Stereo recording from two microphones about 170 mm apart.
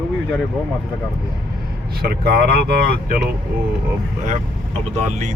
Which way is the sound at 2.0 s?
65° right (ahead or behind).